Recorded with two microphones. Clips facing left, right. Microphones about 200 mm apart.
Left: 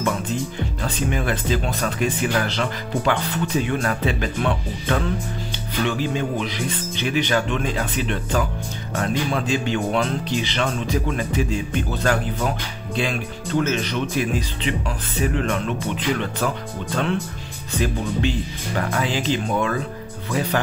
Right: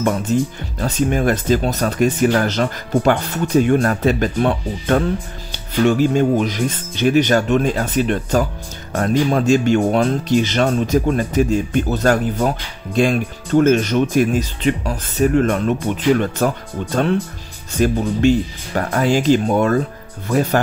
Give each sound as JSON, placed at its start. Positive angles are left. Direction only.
{"t": 0.0, "sound": "speech", "side_deg": -40}